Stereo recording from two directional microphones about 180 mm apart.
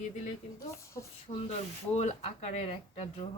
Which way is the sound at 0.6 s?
15° left (ahead or behind).